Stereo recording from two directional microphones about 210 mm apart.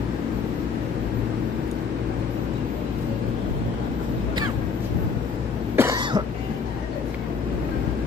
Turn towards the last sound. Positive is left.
turn(degrees=-15)  # may be behind; listen again after turning